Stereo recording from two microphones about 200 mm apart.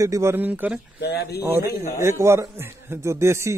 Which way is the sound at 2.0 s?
15° right (ahead or behind).